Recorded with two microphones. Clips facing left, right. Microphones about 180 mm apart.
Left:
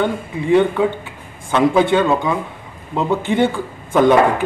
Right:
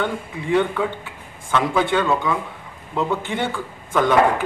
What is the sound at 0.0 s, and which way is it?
Speech, 20° left (ahead or behind).